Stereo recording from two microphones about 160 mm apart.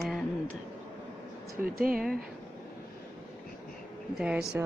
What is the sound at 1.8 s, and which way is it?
Speech, 65° right (ahead or behind).